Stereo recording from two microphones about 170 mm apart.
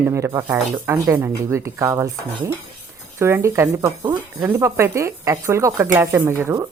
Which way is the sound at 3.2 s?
15° right (ahead or behind).